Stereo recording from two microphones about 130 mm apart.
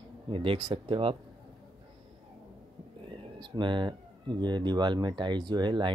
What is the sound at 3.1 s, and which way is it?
Speech, 40° right (ahead or behind).